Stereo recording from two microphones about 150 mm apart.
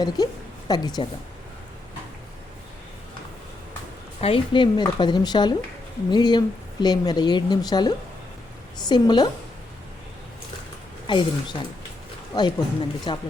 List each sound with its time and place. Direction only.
0.2 s a woman's voice: 25° left (ahead or behind)
4.2 s a woman's voice: 35° left (ahead or behind)
11.0 s a woman's voice: 30° left (ahead or behind)